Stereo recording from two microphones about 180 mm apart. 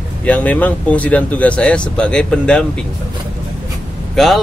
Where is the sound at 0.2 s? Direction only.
10° left (ahead or behind).